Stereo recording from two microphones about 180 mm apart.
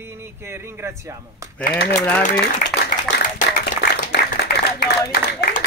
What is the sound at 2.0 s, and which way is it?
Speech, 15° left (ahead or behind).